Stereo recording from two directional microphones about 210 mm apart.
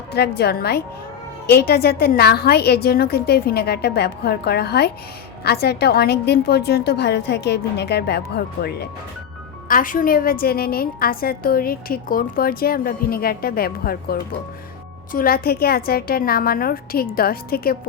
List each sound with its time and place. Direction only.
0.1 s a woman's voice: 50° left (ahead or behind)